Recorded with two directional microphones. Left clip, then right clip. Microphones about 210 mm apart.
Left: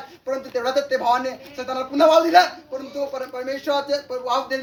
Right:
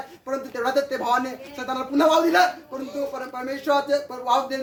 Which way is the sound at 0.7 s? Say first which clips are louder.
Left 4 dB; 15° right (ahead or behind).